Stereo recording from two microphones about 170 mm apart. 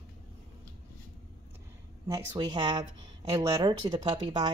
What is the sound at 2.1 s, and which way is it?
Speech, 20° right (ahead or behind).